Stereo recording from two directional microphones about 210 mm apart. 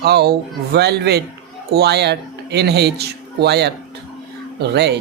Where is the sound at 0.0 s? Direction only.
50° right (ahead or behind).